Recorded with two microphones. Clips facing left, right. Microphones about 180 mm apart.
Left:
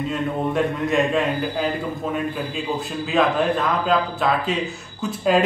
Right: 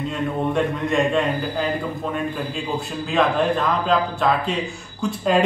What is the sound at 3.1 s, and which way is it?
Speech, centre (ahead or behind).